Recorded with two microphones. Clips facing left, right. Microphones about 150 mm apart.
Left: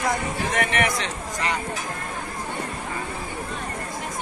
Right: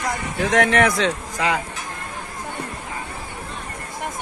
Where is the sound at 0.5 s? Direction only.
90° right.